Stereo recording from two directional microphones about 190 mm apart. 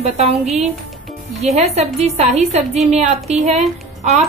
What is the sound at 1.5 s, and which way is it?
A woman's voice, 35° right (ahead or behind).